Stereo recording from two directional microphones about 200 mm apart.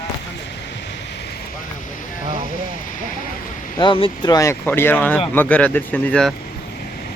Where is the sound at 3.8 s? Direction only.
25° left (ahead or behind); by 6.3 s 5° left (ahead or behind).